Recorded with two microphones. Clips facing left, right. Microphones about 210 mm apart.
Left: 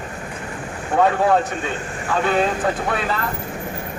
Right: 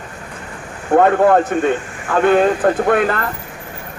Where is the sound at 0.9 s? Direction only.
55° right (ahead or behind).